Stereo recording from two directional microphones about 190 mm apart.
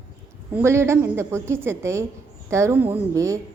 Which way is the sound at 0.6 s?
15° right (ahead or behind).